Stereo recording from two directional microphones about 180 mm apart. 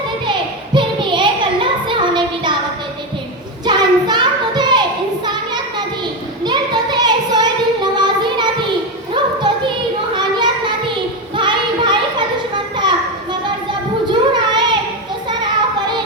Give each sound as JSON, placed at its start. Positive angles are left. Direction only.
{"t": 0.3, "sound": "a sound", "side_deg": -25}
{"t": 3.7, "sound": "child singing", "side_deg": -25}
{"t": 6.4, "sound": "child singing", "side_deg": -25}
{"t": 9.1, "sound": "a sound", "side_deg": -25}
{"t": 10.2, "sound": "child singing", "side_deg": -25}
{"t": 11.3, "sound": "music", "side_deg": -25}
{"t": 14.1, "sound": "child singing", "side_deg": -25}